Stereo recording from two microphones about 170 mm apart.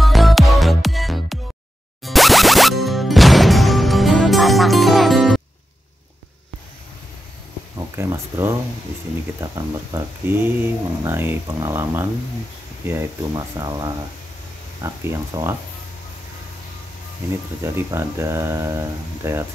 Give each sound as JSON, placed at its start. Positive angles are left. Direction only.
{"t": 0.0, "sound": "music", "side_deg": 0}
{"t": 7.7, "sound": "speech", "side_deg": -15}
{"t": 17.7, "sound": "speech", "side_deg": -15}